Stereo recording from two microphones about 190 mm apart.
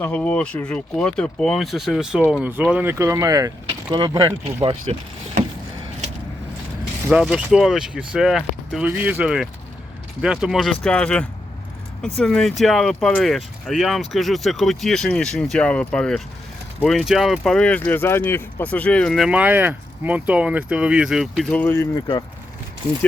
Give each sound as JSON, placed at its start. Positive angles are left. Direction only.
{"t": 0.0, "sound": "speech", "side_deg": 5}
{"t": 4.4, "sound": "speech", "side_deg": -30}
{"t": 7.1, "sound": "speech", "side_deg": -5}